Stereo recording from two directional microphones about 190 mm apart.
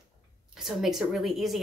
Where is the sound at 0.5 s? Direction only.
Centre (ahead or behind).